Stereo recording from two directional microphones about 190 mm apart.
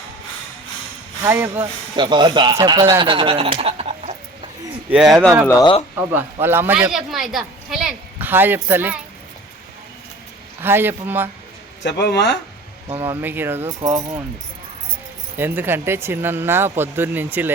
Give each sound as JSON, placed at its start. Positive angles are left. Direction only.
{"t": 1.2, "sound": "speech", "side_deg": -10}
{"t": 2.0, "sound": "speech", "side_deg": -25}
{"t": 4.9, "sound": "speech", "side_deg": -5}
{"t": 5.5, "sound": "speech", "side_deg": 20}
{"t": 6.4, "sound": "speech", "side_deg": -10}
{"t": 10.6, "sound": "speech", "side_deg": -10}
{"t": 11.8, "sound": "speech", "side_deg": 60}
{"t": 13.0, "sound": "speech", "side_deg": -10}
{"t": 15.4, "sound": "speech", "side_deg": -10}